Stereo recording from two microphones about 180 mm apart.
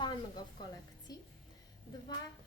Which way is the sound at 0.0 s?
25° left (ahead or behind).